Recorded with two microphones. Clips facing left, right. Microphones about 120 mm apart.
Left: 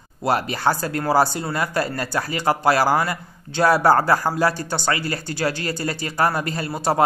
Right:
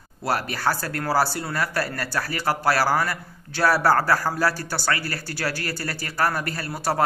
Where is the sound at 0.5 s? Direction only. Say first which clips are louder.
Left 4 dB; 25° left (ahead or behind).